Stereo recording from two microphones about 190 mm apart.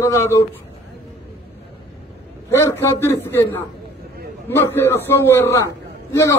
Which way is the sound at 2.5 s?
15° left (ahead or behind).